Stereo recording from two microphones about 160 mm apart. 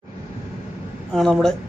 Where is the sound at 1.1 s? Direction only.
Centre (ahead or behind).